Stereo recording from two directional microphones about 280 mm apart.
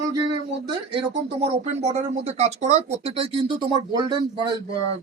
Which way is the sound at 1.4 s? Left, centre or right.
Right.